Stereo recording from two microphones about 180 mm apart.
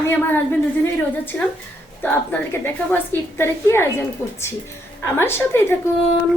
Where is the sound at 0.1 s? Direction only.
10° left (ahead or behind).